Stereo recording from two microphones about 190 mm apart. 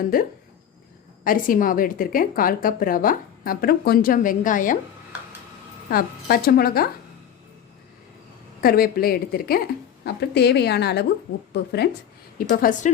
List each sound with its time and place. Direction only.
0.1 s a woman's voice: 50° left (ahead or behind)
5.9 s a woman's voice: 50° left (ahead or behind)
8.6 s a woman's voice: 50° left (ahead or behind)
12.5 s a woman's voice: 40° left (ahead or behind)